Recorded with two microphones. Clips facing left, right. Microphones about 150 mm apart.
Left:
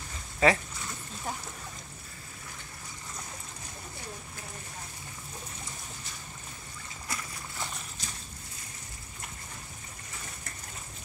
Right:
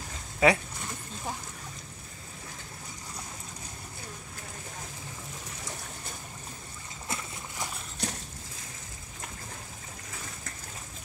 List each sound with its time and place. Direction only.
0.4 s speech: 10° right (ahead or behind)
7.1 s splash: 15° right (ahead or behind)
8.0 s boat: 65° right (ahead or behind)